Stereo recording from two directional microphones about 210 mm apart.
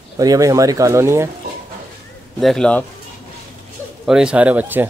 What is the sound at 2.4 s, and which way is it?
Speech, 5° left (ahead or behind).